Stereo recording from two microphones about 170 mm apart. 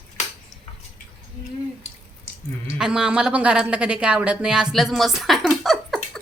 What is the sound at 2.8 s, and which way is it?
A woman's voice, 5° right (ahead or behind).